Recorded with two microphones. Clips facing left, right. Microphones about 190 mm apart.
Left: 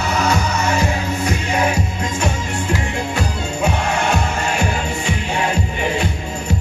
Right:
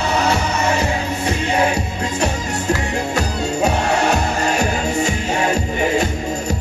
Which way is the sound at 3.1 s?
40° right (ahead or behind).